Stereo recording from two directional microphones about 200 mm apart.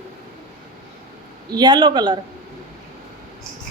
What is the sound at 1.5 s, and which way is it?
Speech, 20° right (ahead or behind).